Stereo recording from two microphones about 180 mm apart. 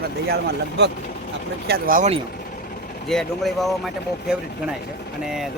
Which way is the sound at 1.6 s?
50° right (ahead or behind).